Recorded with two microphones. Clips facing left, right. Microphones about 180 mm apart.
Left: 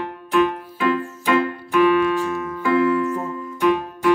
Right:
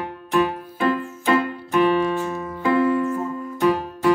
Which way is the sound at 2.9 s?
40° right (ahead or behind).